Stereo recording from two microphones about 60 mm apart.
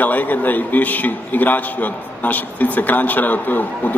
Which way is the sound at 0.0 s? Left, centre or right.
Left.